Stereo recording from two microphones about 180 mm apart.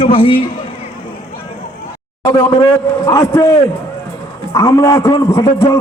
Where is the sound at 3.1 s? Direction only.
20° left (ahead or behind).